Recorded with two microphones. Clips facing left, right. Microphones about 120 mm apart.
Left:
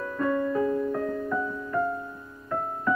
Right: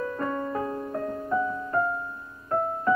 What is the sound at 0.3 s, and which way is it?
Music, 35° right (ahead or behind).